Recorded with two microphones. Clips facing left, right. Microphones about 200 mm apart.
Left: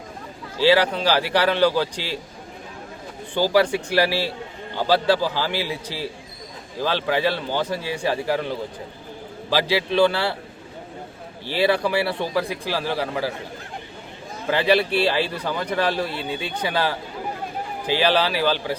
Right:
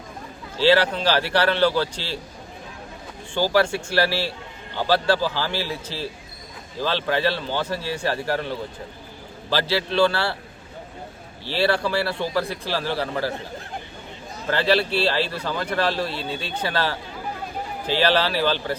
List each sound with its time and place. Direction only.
0.6 s speech: 10° left (ahead or behind)
3.5 s speech: 15° left (ahead or behind)
11.4 s speech: 15° left (ahead or behind)
14.4 s speech: 15° left (ahead or behind)